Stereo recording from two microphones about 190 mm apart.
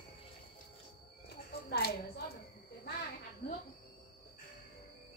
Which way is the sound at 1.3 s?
55° left (ahead or behind).